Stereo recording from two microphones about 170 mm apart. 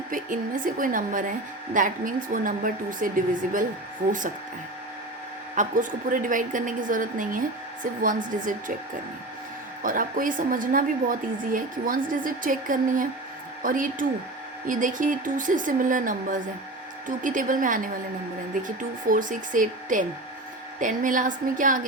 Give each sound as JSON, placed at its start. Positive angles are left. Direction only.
{"t": 0.1, "sound": "a woman's voice", "side_deg": -50}
{"t": 5.5, "sound": "a woman's voice", "side_deg": -50}
{"t": 9.8, "sound": "a woman's voice", "side_deg": -55}